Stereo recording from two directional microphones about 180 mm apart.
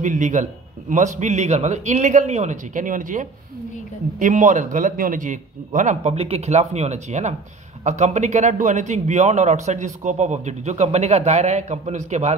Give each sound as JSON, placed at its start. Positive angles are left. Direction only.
{"t": 0.0, "sound": "a man's voice", "side_deg": -45}